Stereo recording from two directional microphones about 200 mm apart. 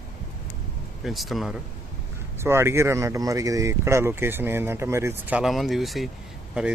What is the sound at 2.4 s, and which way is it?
Speech, 15° right (ahead or behind).